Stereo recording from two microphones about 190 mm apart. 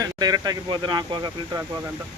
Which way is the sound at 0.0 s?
20° right (ahead or behind).